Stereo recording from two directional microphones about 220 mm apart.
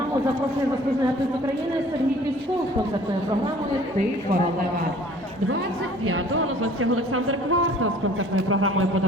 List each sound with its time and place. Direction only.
6.1 s a man's voice: 70° right (ahead or behind)